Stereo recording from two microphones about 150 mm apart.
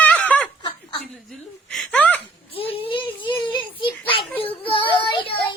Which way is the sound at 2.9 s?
30° left (ahead or behind).